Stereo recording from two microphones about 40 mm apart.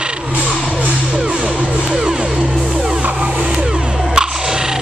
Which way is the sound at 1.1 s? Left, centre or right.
Right.